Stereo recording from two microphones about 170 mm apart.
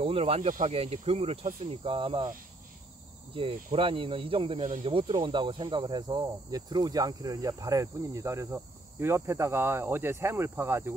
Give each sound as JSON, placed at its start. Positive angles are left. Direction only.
{"t": 0.0, "sound": "speech", "side_deg": -35}
{"t": 3.3, "sound": "speech", "side_deg": -30}
{"t": 4.8, "sound": "speech", "side_deg": -30}